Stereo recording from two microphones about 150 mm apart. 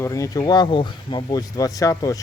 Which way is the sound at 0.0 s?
20° left (ahead or behind).